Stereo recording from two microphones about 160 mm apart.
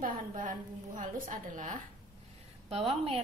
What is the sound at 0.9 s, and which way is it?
Speech, 55° right (ahead or behind).